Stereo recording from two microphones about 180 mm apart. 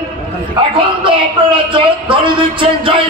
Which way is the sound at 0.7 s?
30° right (ahead or behind).